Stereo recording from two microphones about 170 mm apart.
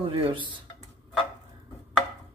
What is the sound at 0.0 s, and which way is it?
Speech, 30° right (ahead or behind).